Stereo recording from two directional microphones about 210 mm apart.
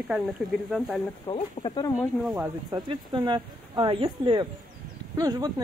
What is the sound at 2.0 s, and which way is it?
Speech, 5° right (ahead or behind).